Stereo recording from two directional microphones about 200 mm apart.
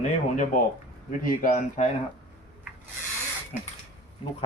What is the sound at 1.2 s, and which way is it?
Speech, 45° left (ahead or behind).